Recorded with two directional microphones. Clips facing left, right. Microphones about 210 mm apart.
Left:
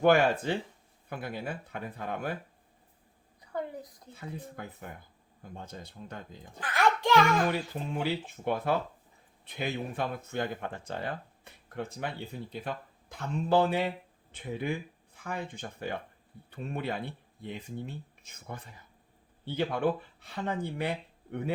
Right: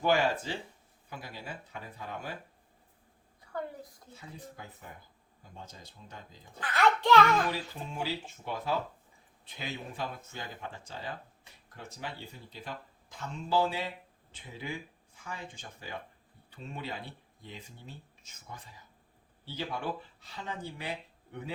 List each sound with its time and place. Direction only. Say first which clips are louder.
0.0 s speech: left 5 dB; 55° left (ahead or behind)
3.5 s a woman's voice: left 2 dB; 20° left (ahead or behind)
4.1 s speech: left 8 dB; 60° left (ahead or behind)
6.6 s music: even; 15° left (ahead or behind)
7.5 s speech: left 5 dB; 60° left (ahead or behind)